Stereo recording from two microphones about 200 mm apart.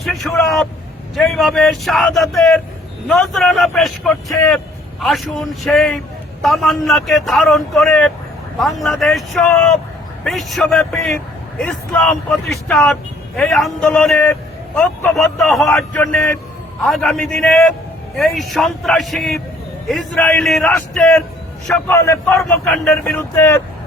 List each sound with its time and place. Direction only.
0.0 s a man's voice: centre (ahead or behind)